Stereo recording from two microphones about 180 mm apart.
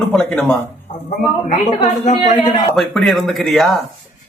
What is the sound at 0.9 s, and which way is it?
Speech, 40° left (ahead or behind).